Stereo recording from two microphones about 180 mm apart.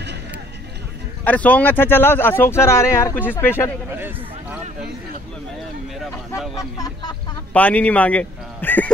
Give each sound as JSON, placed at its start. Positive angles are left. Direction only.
{"t": 1.2, "sound": "speech", "side_deg": 10}
{"t": 3.9, "sound": "a man's voice", "side_deg": -10}
{"t": 6.3, "sound": "speech", "side_deg": 0}
{"t": 6.8, "sound": "a sound", "side_deg": 25}
{"t": 7.5, "sound": "a man's voice", "side_deg": 10}